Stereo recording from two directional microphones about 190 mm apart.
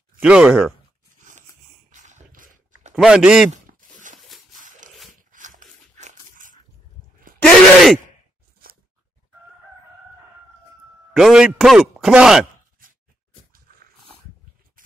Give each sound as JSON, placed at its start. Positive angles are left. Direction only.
{"t": 0.2, "sound": "a man's voice", "side_deg": -5}
{"t": 1.9, "sound": "a sound", "side_deg": -40}
{"t": 3.0, "sound": "a man's voice", "side_deg": -5}
{"t": 3.5, "sound": "a sound", "side_deg": -40}
{"t": 5.3, "sound": "dog", "side_deg": -45}
{"t": 7.3, "sound": "speech", "side_deg": 0}
{"t": 8.6, "sound": "a sound", "side_deg": -50}
{"t": 11.1, "sound": "a man's voice", "side_deg": -5}
{"t": 13.7, "sound": "dog", "side_deg": -50}